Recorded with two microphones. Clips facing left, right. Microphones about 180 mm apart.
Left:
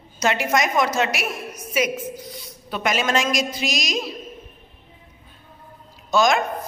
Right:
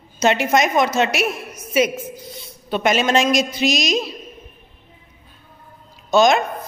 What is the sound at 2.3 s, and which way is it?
A woman's voice, 25° right (ahead or behind).